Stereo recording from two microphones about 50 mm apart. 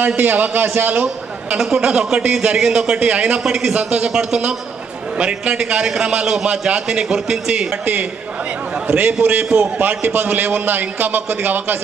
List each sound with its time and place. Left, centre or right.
0.2 s a man's voice: right
1.6 s a man's voice: centre
3.4 s a man's voice: centre
3.7 s a man's voice: right
7.8 s a man's voice: right